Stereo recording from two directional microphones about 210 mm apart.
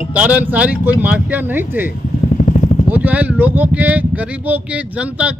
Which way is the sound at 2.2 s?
35° left (ahead or behind).